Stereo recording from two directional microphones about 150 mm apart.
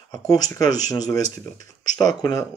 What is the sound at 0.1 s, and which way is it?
Speech, 25° left (ahead or behind).